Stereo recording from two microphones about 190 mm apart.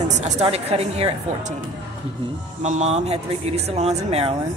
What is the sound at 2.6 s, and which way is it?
A woman's voice, 35° right (ahead or behind).